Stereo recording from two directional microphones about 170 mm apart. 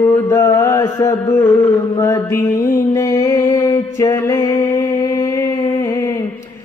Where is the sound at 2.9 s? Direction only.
20° left (ahead or behind).